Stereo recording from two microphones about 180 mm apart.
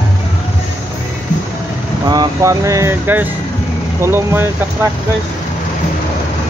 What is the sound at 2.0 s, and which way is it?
Speech, 20° right (ahead or behind).